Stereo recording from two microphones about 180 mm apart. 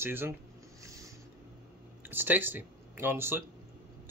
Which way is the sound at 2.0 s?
10° right (ahead or behind).